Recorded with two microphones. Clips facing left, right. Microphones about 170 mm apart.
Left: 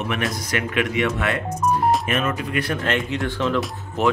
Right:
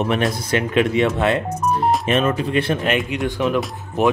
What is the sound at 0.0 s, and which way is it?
Speech, 30° right (ahead or behind).